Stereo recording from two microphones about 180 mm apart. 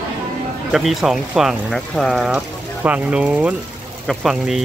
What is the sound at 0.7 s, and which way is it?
Speech, centre (ahead or behind).